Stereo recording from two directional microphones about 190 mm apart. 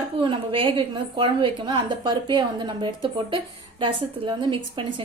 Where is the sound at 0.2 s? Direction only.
25° right (ahead or behind).